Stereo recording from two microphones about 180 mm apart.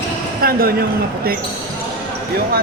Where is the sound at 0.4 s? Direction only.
55° right (ahead or behind).